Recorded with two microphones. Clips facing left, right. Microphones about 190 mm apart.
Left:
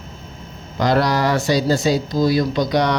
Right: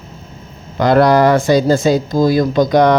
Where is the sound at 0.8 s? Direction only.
55° right (ahead or behind).